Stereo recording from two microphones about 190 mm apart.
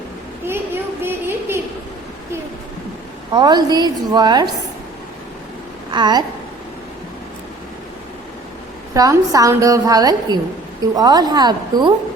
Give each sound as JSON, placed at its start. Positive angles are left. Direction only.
{"t": 0.4, "sound": "a sound", "side_deg": -10}
{"t": 3.3, "sound": "a woman's voice", "side_deg": -20}
{"t": 5.9, "sound": "a woman's voice", "side_deg": -25}
{"t": 9.0, "sound": "a woman's voice", "side_deg": -20}